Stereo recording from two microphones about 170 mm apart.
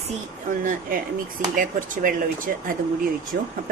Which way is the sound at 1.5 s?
50° right (ahead or behind).